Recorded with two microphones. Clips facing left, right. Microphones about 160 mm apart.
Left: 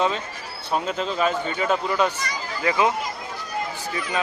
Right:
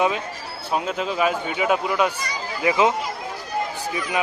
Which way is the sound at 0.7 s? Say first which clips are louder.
Right 1 dB; 5° right (ahead or behind).